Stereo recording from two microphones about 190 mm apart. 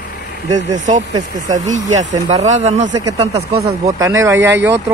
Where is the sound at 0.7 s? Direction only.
40° right (ahead or behind).